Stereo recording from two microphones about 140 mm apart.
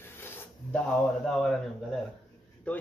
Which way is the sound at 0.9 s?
Centre (ahead or behind).